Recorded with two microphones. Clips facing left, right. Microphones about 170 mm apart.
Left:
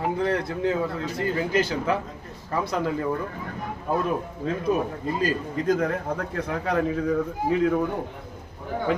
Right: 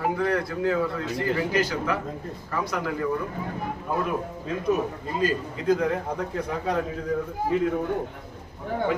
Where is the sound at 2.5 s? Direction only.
25° left (ahead or behind).